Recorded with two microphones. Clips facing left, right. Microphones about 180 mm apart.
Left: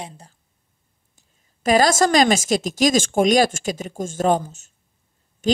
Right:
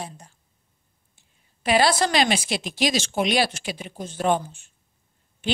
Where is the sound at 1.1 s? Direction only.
45° left (ahead or behind).